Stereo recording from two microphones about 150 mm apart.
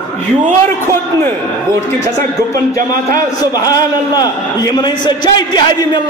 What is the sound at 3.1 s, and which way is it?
A man's voice, 25° left (ahead or behind).